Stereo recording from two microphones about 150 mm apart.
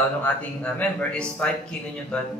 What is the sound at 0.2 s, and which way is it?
Speech, 10° left (ahead or behind).